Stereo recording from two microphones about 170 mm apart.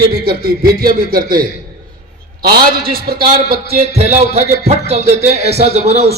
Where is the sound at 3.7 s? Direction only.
40° right (ahead or behind).